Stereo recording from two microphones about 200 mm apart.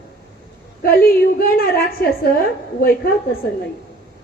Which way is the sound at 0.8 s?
50° left (ahead or behind).